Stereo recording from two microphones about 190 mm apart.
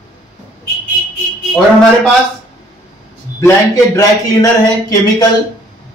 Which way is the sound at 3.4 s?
15° left (ahead or behind).